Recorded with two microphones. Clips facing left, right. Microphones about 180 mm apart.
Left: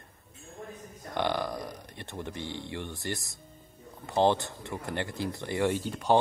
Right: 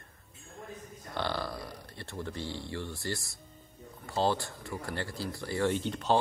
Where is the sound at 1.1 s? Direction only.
15° left (ahead or behind).